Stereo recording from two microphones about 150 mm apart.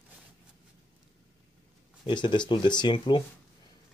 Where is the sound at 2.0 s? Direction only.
30° left (ahead or behind).